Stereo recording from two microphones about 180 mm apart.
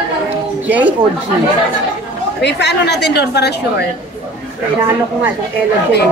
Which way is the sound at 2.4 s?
70° left (ahead or behind).